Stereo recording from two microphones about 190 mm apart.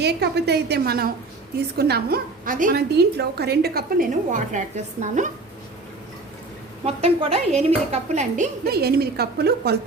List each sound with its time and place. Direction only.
0.0 s a woman's voice: 60° right (ahead or behind); by 5.3 s 40° right (ahead or behind)
6.8 s a woman's voice: 30° right (ahead or behind)
8.6 s a woman's voice: 55° right (ahead or behind)